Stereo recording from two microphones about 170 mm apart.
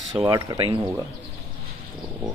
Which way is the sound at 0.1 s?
25° right (ahead or behind).